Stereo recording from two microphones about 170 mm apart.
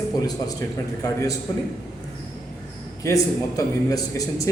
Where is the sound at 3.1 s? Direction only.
20° left (ahead or behind).